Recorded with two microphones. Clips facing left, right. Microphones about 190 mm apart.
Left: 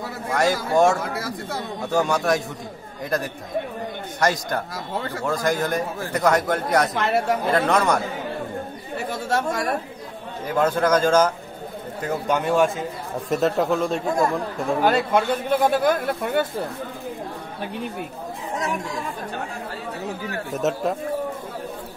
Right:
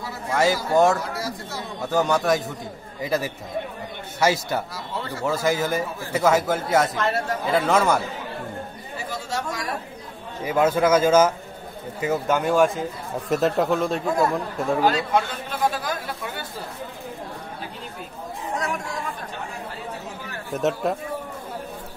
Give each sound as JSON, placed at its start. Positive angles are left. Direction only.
{"t": 0.3, "sound": "a man's voice", "side_deg": -5}
{"t": 1.1, "sound": "speech", "side_deg": 55}
{"t": 1.8, "sound": "a man's voice", "side_deg": 0}
{"t": 6.9, "sound": "speech", "side_deg": 65}
{"t": 7.5, "sound": "a man's voice", "side_deg": -5}
{"t": 8.9, "sound": "a sound", "side_deg": 60}
{"t": 10.4, "sound": "a man's voice", "side_deg": -5}
{"t": 14.9, "sound": "speech", "side_deg": 55}
{"t": 20.5, "sound": "a man's voice", "side_deg": 0}